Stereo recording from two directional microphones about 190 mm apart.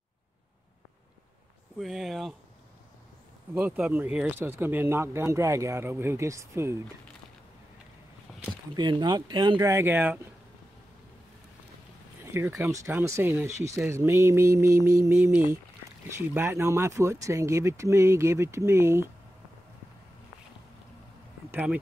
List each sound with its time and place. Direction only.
1.8 s speech: centre (ahead or behind)
3.5 s speech: 10° right (ahead or behind)
8.3 s a sound: 5° right (ahead or behind)
8.7 s speech: 25° right (ahead or behind)
12.2 s speech: 10° right (ahead or behind)
21.5 s speech: 10° right (ahead or behind)